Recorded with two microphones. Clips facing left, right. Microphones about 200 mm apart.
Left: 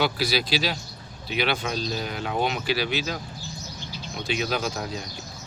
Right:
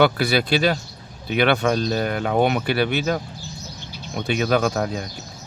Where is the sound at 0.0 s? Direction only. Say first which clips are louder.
Right 7 dB; 60° right (ahead or behind).